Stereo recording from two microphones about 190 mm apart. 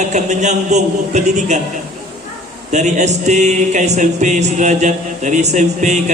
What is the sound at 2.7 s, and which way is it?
Music, 40° right (ahead or behind).